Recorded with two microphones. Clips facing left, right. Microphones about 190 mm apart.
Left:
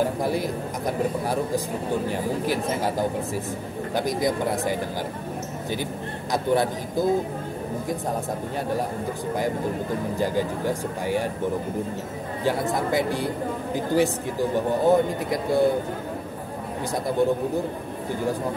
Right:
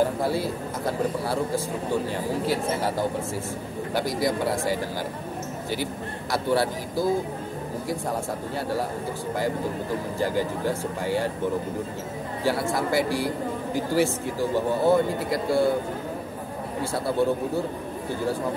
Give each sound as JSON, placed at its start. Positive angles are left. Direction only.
{"t": 0.2, "sound": "speech", "side_deg": 15}
{"t": 3.9, "sound": "speech", "side_deg": 20}
{"t": 6.3, "sound": "speech", "side_deg": 20}
{"t": 10.1, "sound": "speech", "side_deg": 15}
{"t": 12.4, "sound": "speech", "side_deg": 20}